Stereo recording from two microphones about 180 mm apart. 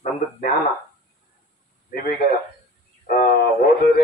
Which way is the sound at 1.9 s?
55° left (ahead or behind).